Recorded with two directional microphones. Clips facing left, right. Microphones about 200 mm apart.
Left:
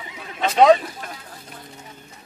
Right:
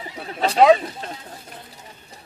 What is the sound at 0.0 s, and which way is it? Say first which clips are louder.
Neigh: right 2 dB; 35° right (ahead or behind).